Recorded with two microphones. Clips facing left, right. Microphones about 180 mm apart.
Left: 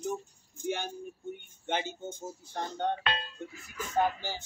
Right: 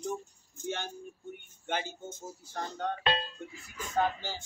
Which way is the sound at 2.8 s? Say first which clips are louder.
Left 4 dB; 30° left (ahead or behind).